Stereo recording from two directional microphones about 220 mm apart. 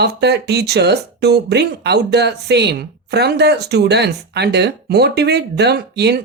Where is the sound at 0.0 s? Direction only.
50° right (ahead or behind).